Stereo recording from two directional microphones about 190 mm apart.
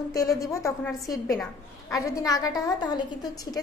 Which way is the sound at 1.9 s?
15° left (ahead or behind).